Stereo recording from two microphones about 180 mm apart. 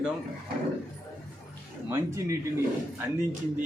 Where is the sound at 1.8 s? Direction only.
15° right (ahead or behind).